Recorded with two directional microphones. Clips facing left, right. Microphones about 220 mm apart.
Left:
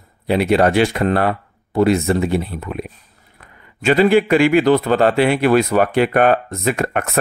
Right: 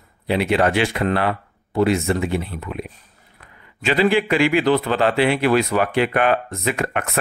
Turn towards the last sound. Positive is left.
turn(degrees=40)  # may be behind; listen again after turning